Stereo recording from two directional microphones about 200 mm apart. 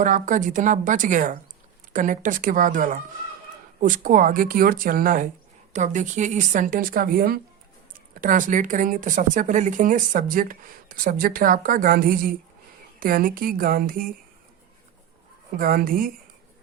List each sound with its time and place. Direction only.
0.0 s a woman's voice: 40° right (ahead or behind)
15.5 s speech: 45° right (ahead or behind)